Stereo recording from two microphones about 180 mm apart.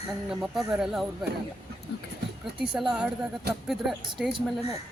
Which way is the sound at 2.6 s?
5° right (ahead or behind).